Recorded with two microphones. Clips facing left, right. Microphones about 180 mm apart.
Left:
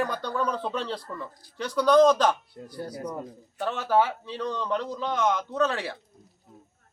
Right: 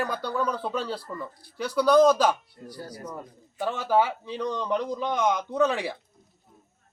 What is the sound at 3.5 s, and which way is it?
A man's voice, 10° right (ahead or behind).